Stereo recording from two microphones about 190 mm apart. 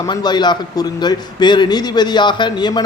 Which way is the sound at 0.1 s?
20° left (ahead or behind).